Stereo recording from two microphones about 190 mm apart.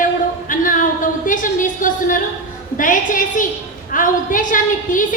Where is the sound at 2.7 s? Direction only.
45° left (ahead or behind).